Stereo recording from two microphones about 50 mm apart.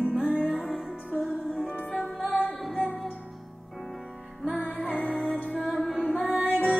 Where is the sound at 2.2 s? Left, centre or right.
Left.